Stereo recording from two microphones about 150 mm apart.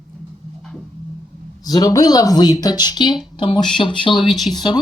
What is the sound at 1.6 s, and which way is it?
A woman's voice, 25° left (ahead or behind).